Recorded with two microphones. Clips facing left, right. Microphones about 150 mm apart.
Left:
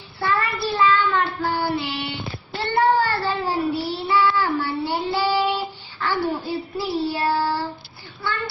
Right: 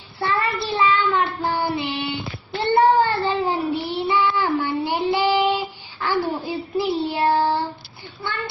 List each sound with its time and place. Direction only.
0.2 s child singing: 20° right (ahead or behind)